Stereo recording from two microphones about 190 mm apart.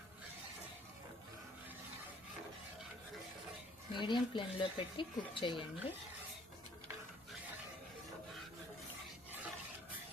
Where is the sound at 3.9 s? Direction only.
25° left (ahead or behind).